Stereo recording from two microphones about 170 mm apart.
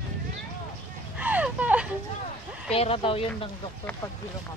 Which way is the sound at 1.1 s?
10° right (ahead or behind).